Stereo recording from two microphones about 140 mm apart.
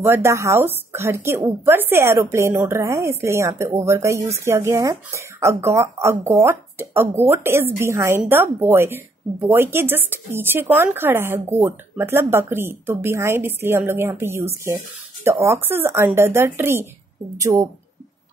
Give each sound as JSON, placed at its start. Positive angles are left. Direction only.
{"t": 0.0, "sound": "a woman's voice", "side_deg": -20}